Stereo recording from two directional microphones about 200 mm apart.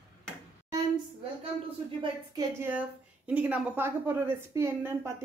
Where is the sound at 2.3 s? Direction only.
10° right (ahead or behind).